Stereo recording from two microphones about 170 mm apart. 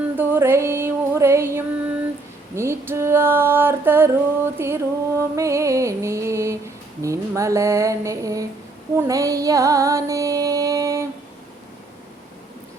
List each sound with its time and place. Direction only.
0.2 s music: 15° right (ahead or behind)
2.6 s female singing: 15° right (ahead or behind)
7.0 s a sound: 20° right (ahead or behind)
9.0 s music: 20° right (ahead or behind)